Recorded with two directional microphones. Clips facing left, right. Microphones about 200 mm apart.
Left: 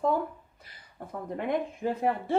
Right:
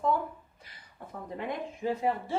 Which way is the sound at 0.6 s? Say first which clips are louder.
Left 5 dB; 50° left (ahead or behind).